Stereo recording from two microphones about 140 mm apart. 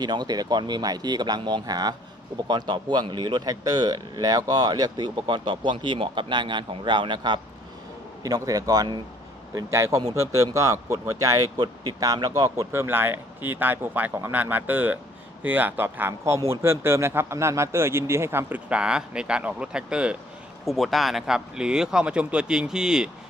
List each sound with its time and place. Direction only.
0.0 s speech: 30° right (ahead or behind); by 23.0 s 5° right (ahead or behind)